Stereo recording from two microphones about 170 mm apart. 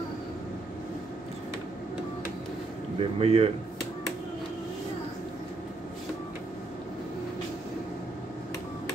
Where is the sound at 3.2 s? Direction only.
35° right (ahead or behind).